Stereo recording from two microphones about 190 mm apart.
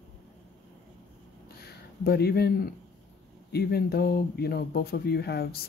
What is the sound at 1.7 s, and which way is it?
Speech, 55° left (ahead or behind).